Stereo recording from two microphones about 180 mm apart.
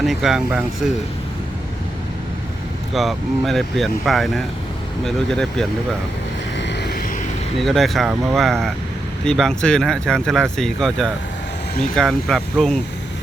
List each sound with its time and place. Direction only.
0.0 s speech: centre (ahead or behind)
2.9 s speech: centre (ahead or behind)
6.6 s vehicle: 70° left (ahead or behind)
7.6 s speech: centre (ahead or behind)